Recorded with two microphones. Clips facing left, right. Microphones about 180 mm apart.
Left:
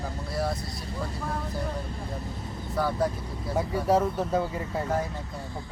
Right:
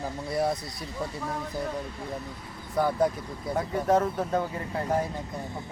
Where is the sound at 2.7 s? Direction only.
15° right (ahead or behind).